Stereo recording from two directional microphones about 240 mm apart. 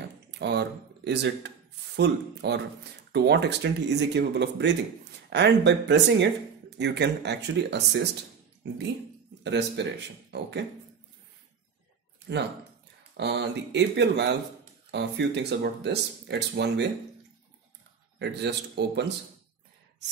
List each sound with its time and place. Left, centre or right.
0.3 s speech: right
9.4 s speech: right
12.3 s speech: right
18.2 s speech: right